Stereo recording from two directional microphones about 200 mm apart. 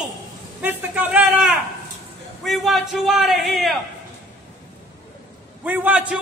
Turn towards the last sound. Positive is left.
turn(degrees=-10)  # may be behind; listen again after turning